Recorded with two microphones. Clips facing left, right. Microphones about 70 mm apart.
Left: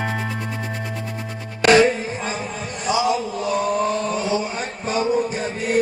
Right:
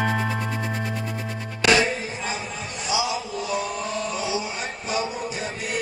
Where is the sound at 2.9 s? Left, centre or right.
Left.